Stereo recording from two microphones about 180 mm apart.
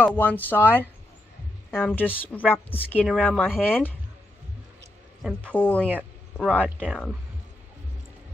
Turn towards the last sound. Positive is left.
turn(degrees=-5)  # may be behind; listen again after turning